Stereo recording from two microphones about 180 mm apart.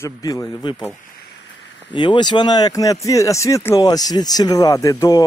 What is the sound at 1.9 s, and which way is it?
Speech, 25° left (ahead or behind).